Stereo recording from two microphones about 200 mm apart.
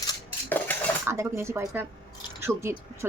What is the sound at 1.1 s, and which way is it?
A woman's voice, 15° right (ahead or behind).